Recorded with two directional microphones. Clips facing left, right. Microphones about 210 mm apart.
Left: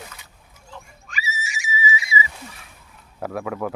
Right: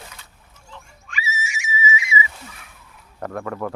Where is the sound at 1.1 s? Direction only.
35° left (ahead or behind).